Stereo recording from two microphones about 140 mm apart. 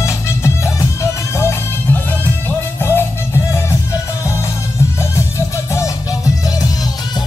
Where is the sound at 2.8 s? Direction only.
15° left (ahead or behind).